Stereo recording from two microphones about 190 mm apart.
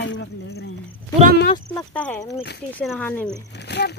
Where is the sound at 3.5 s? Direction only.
60° left (ahead or behind).